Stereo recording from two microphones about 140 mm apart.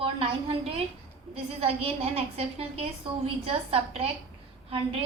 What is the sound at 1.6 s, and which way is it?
A woman's voice, 45° right (ahead or behind).